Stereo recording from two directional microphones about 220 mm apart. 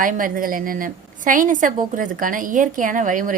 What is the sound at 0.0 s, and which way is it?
A woman's voice, 40° right (ahead or behind).